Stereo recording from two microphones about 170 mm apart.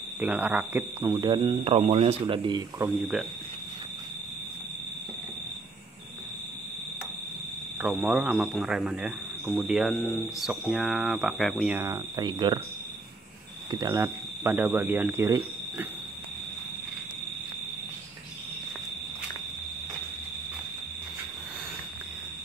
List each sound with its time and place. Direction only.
0.2 s speech: 10° right (ahead or behind)
1.1 s speech: 25° right (ahead or behind)
7.8 s speech: 10° right (ahead or behind)
11.7 s speech: 15° right (ahead or behind)
13.7 s speech: 20° right (ahead or behind)